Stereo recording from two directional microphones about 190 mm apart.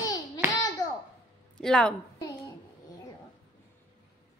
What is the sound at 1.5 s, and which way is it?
Speech, 5° left (ahead or behind).